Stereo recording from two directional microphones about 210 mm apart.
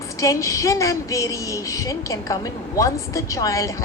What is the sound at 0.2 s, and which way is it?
A woman's voice, 15° left (ahead or behind).